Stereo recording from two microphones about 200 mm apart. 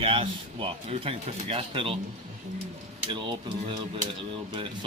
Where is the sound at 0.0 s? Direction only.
25° right (ahead or behind).